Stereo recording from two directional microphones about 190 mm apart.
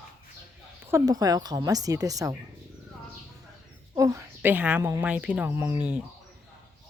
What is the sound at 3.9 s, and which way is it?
Speech, 15° right (ahead or behind).